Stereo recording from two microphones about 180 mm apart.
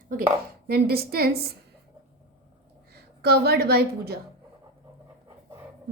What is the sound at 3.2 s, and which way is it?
Speech, 60° right (ahead or behind).